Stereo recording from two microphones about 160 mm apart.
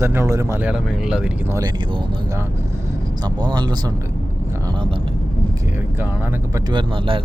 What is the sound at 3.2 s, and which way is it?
Speech, 25° right (ahead or behind).